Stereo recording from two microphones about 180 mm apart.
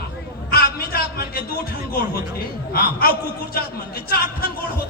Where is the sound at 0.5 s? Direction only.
60° left (ahead or behind).